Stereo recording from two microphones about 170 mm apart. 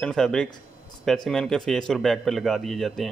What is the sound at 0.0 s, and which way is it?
A man's voice, 5° left (ahead or behind).